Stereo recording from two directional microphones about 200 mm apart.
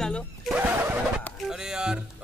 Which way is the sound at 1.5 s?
5° right (ahead or behind).